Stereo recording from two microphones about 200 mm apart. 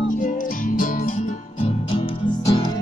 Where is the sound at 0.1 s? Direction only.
40° left (ahead or behind).